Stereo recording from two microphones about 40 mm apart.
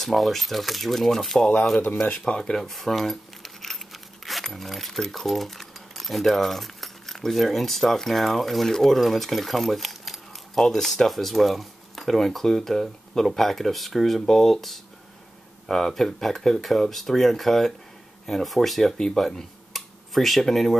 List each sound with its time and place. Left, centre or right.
0.0 s speech: centre
2.2 s speech: centre
2.5 s speech: centre